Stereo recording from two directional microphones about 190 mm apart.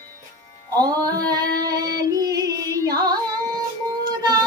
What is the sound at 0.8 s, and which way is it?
Female singing, 20° right (ahead or behind).